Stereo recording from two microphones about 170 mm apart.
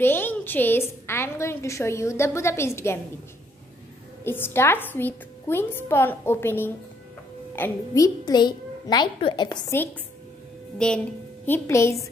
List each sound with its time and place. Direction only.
0.0 s a woman's voice: 10° left (ahead or behind)
4.2 s a woman's voice: 15° left (ahead or behind)
10.8 s a woman's voice: 5° left (ahead or behind)